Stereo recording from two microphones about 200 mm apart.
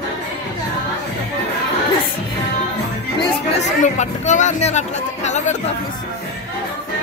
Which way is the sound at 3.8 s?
35° left (ahead or behind).